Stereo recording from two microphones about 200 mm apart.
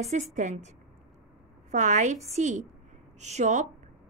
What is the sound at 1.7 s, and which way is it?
A woman's voice, 40° right (ahead or behind).